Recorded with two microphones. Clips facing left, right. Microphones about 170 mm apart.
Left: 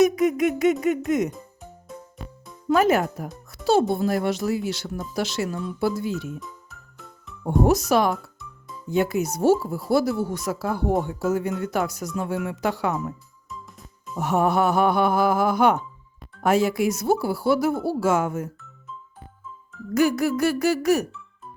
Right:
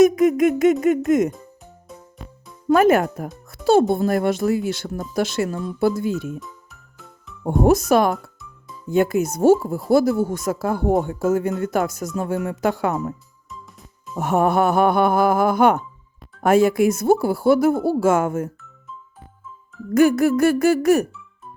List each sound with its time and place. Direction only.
0.0 s speech: 50° right (ahead or behind)
2.6 s speech: 55° right (ahead or behind)
7.7 s speech: 50° right (ahead or behind)
14.2 s speech: 50° right (ahead or behind)
19.9 s speech: 50° right (ahead or behind)